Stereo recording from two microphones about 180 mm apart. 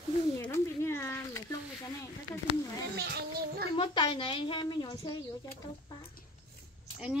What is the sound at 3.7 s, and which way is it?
A woman's voice, 30° left (ahead or behind).